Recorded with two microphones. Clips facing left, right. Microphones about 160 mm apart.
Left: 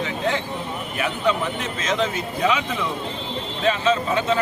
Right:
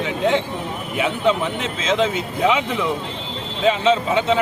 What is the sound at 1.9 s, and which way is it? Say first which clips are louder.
A man's voice: right 4 dB; 20° right (ahead or behind).